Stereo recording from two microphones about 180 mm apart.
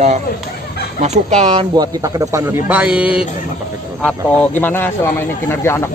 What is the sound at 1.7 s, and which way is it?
Speech, 20° right (ahead or behind).